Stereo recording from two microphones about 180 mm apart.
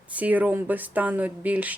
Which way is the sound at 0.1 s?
10° right (ahead or behind).